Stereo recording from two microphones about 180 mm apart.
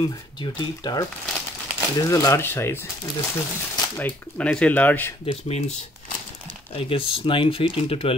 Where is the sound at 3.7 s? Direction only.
20° left (ahead or behind).